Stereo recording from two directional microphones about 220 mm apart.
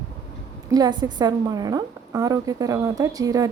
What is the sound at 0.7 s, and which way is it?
A woman's voice, 20° right (ahead or behind).